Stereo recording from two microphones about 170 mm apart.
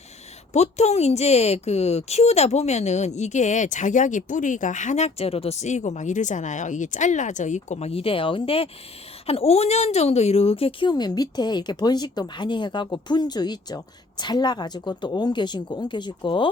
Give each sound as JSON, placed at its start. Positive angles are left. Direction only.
{"t": 0.5, "sound": "a woman's voice", "side_deg": 40}